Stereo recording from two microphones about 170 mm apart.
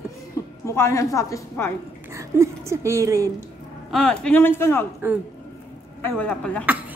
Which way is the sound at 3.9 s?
5° left (ahead or behind).